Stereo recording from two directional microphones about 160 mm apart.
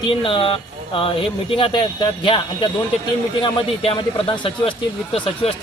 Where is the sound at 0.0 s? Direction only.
30° left (ahead or behind).